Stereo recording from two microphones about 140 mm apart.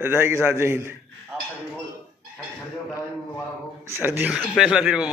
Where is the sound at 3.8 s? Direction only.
15° right (ahead or behind).